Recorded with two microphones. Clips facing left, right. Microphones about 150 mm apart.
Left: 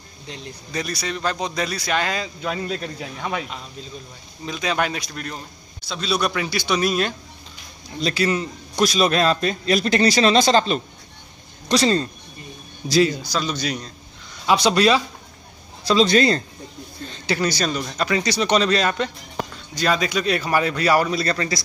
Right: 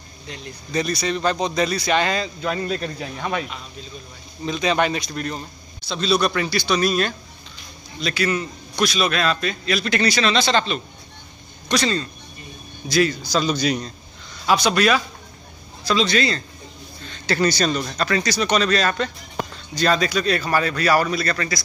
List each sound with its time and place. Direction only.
0.7 s a man's voice: 5° left (ahead or behind)
4.5 s a man's voice: 5° left (ahead or behind)
8.0 s a man's voice: 30° left (ahead or behind)
13.3 s a man's voice: centre (ahead or behind)
14.4 s a man's voice: 25° left (ahead or behind)
16.1 s a man's voice: 40° left (ahead or behind)
17.4 s a man's voice: 10° left (ahead or behind); by 21.5 s 30° left (ahead or behind)